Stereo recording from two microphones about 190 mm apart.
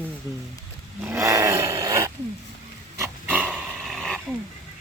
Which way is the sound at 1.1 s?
15° right (ahead or behind).